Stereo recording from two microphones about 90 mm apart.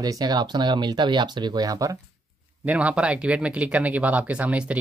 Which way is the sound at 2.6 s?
15° right (ahead or behind).